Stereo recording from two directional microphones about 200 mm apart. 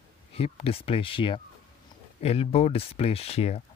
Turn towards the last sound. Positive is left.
turn(degrees=30)  # may be behind; listen again after turning